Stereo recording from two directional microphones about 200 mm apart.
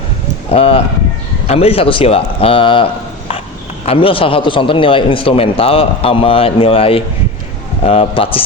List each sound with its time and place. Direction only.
0.5 s a man's voice: 30° left (ahead or behind)
3.8 s a man's voice: 25° left (ahead or behind)